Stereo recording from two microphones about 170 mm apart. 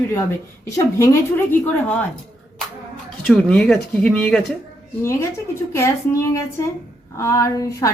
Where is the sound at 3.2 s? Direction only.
5° left (ahead or behind).